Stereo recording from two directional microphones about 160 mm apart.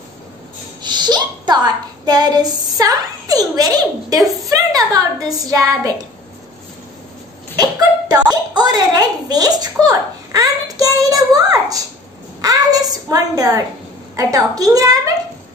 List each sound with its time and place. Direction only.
0.8 s a woman's voice: 25° right (ahead or behind)
8.1 s a woman's voice: 25° right (ahead or behind)